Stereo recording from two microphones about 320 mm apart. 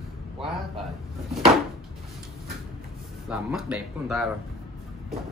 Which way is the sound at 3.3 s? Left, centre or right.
Centre.